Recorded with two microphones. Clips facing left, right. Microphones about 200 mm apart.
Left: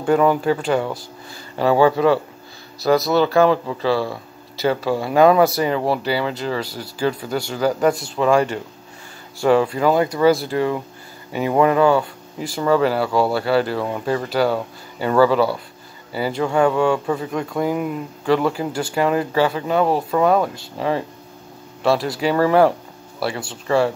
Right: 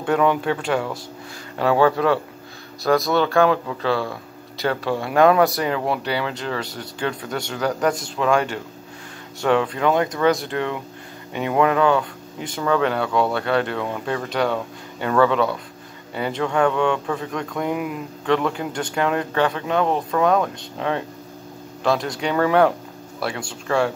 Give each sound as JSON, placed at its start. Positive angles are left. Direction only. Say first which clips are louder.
{"t": 0.0, "sound": "speech", "louder": "left 3 dB", "side_deg": 0}